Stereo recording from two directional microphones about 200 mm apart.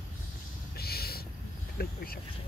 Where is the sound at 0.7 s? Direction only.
50° left (ahead or behind).